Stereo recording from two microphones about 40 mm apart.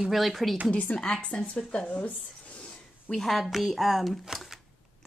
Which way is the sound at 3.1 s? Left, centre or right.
Centre.